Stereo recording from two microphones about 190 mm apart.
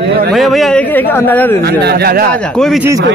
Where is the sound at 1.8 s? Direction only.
55° right (ahead or behind).